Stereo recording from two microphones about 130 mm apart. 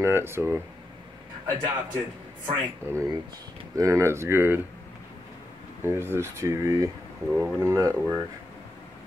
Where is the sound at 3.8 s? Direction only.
25° right (ahead or behind).